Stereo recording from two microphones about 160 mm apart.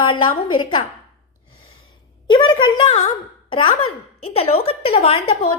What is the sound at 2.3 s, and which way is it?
A woman's voice, 30° left (ahead or behind).